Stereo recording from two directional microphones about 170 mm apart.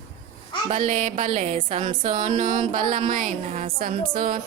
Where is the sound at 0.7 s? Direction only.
45° right (ahead or behind).